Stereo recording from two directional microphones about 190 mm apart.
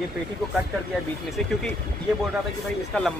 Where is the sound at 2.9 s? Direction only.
5° left (ahead or behind).